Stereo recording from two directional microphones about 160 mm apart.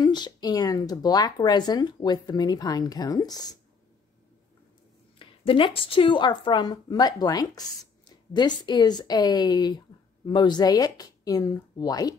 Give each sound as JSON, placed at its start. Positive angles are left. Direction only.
{"t": 0.0, "sound": "a woman's voice", "side_deg": 25}
{"t": 5.2, "sound": "a woman's voice", "side_deg": 35}